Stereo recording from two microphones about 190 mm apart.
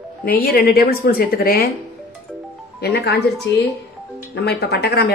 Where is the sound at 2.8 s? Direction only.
60° left (ahead or behind).